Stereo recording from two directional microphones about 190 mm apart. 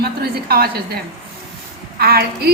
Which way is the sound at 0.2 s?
55° right (ahead or behind).